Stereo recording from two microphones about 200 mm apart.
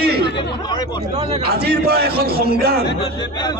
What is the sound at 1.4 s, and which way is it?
A man's voice, 50° right (ahead or behind).